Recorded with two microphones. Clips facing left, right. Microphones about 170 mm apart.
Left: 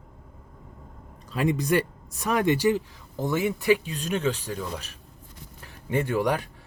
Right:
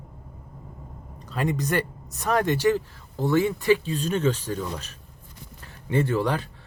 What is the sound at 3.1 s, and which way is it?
Speech, 15° left (ahead or behind).